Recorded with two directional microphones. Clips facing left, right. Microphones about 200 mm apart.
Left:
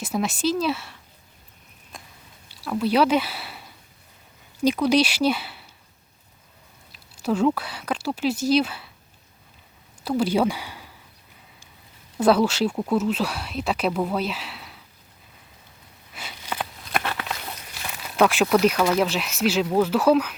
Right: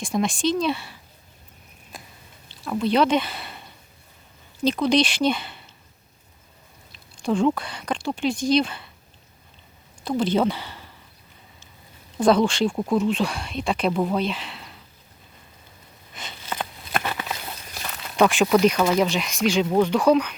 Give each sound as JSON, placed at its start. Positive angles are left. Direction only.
{"t": 0.0, "sound": "speech", "side_deg": 5}
{"t": 1.9, "sound": "biting", "side_deg": 0}
{"t": 2.6, "sound": "speech", "side_deg": 5}
{"t": 6.9, "sound": "speech", "side_deg": 5}
{"t": 10.0, "sound": "speech", "side_deg": 10}
{"t": 12.1, "sound": "speech", "side_deg": 5}
{"t": 16.1, "sound": "a sound", "side_deg": 10}
{"t": 16.8, "sound": "clip-clop", "side_deg": -5}
{"t": 17.1, "sound": "a sound", "side_deg": -5}
{"t": 17.8, "sound": "speech", "side_deg": 5}